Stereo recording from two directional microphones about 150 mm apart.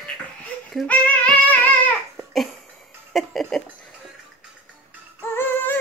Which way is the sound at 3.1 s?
Centre (ahead or behind).